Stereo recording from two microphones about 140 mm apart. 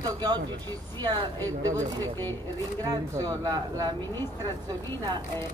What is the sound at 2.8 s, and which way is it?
A man's voice, 25° right (ahead or behind).